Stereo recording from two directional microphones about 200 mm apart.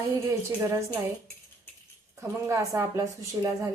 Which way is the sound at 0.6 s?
15° right (ahead or behind).